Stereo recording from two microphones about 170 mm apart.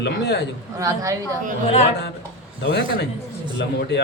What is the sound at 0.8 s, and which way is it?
Speech, 20° right (ahead or behind).